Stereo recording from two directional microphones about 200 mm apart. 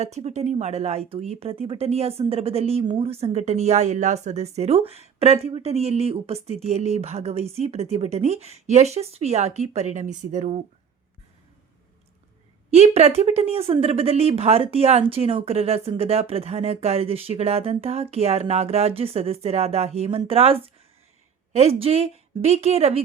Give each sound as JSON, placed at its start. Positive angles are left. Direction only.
{"t": 0.0, "sound": "a woman's voice", "side_deg": -35}
{"t": 12.7, "sound": "a woman's voice", "side_deg": -30}